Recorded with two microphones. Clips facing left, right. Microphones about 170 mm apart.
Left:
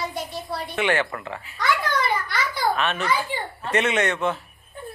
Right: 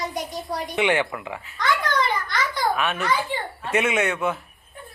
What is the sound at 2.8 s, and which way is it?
Speech, 10° right (ahead or behind).